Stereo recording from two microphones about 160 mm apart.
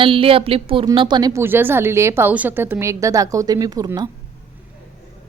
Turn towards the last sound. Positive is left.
turn(degrees=-25)  # may be behind; listen again after turning